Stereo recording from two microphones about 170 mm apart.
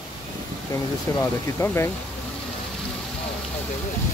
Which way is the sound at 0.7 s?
20° left (ahead or behind).